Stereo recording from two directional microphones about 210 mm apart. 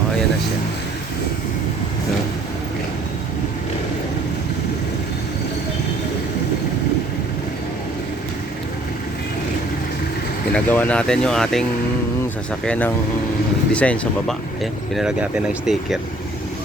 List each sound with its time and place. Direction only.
10.5 s speech: 5° left (ahead or behind)
12.6 s speech: 5° left (ahead or behind)